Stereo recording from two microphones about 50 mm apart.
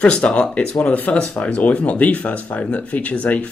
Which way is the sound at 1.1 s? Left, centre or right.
Centre.